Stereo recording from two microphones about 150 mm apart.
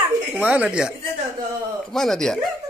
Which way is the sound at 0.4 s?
10° right (ahead or behind).